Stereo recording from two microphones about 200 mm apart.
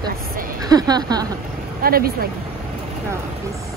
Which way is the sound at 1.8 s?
50° right (ahead or behind).